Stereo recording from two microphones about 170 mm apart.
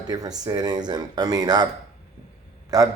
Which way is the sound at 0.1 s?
20° right (ahead or behind).